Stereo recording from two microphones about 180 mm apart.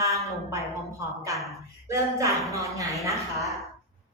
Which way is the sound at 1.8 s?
15° right (ahead or behind).